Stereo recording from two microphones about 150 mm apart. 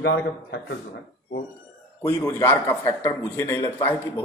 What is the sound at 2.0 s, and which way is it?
A man's voice, 15° left (ahead or behind).